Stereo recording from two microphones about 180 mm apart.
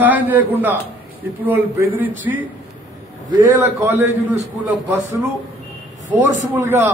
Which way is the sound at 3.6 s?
15° right (ahead or behind).